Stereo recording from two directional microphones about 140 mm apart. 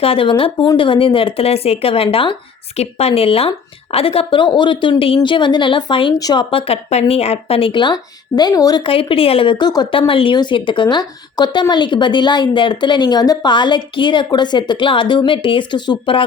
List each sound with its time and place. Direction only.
0.0 s a woman's voice: 40° left (ahead or behind)
10.0 s a woman's voice: 40° left (ahead or behind)